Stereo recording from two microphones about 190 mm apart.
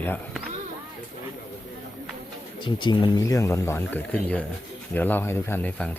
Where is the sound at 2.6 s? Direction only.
25° left (ahead or behind); by 5.9 s 10° left (ahead or behind).